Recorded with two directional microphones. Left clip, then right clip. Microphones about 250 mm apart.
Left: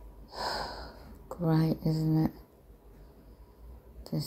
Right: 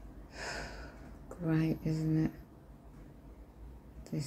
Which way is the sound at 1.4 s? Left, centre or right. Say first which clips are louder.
Left 4 dB; centre.